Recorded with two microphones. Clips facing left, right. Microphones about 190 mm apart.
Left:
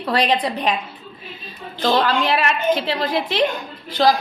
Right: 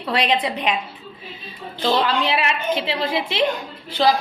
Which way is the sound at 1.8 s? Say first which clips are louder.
Left 2 dB; 50° left (ahead or behind).